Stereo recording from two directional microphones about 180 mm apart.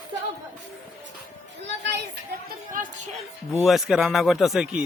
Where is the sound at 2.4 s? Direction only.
50° right (ahead or behind).